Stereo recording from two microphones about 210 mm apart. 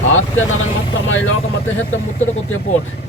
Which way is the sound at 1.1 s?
70° left (ahead or behind).